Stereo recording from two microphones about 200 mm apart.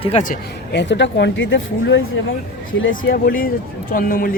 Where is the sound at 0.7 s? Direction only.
60° left (ahead or behind).